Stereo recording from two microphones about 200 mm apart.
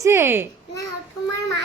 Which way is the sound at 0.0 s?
10° right (ahead or behind).